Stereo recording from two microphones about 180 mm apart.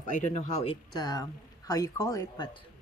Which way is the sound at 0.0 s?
45° left (ahead or behind).